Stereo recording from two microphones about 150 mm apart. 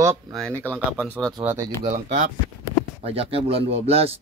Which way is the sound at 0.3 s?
5° left (ahead or behind).